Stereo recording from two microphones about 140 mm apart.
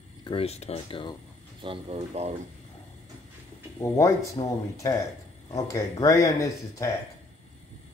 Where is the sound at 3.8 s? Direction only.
20° left (ahead or behind).